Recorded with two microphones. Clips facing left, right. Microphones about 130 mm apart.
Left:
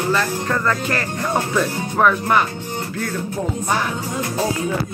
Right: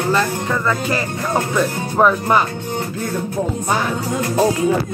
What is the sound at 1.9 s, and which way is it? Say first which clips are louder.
Speech: right 2 dB; 25° right (ahead or behind).